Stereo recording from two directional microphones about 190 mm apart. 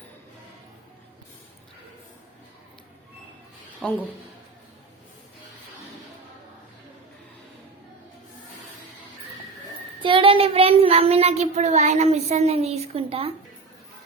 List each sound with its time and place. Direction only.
3.8 s speech: 5° left (ahead or behind)
10.0 s speech: 25° right (ahead or behind)